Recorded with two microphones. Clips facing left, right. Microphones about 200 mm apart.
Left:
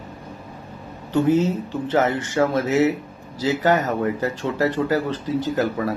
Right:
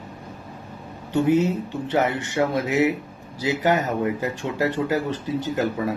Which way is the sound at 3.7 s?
40° left (ahead or behind).